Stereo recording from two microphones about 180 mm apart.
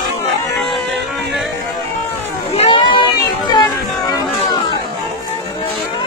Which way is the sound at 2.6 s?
30° left (ahead or behind).